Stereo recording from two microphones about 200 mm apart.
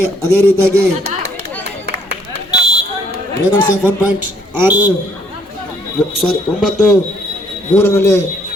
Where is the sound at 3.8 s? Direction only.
10° right (ahead or behind).